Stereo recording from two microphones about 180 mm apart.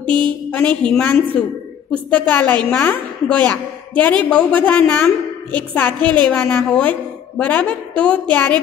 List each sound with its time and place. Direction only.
0.1 s speech: 25° right (ahead or behind)
0.5 s a woman's voice: 5° left (ahead or behind)